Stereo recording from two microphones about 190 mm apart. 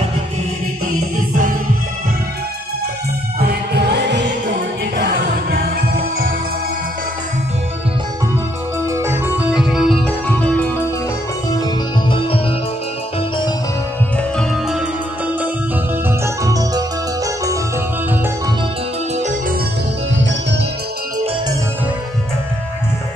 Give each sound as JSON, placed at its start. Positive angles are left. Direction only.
{"t": 3.3, "sound": "music", "side_deg": -55}
{"t": 5.5, "sound": "music", "side_deg": -55}
{"t": 8.8, "sound": "music", "side_deg": -15}
{"t": 11.5, "sound": "music", "side_deg": 25}
{"t": 16.4, "sound": "music", "side_deg": -20}